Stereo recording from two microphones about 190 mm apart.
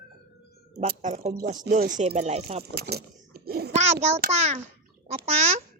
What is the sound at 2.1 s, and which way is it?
Speech, 35° right (ahead or behind).